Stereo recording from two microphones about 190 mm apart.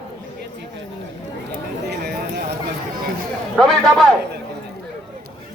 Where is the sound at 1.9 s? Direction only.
55° right (ahead or behind).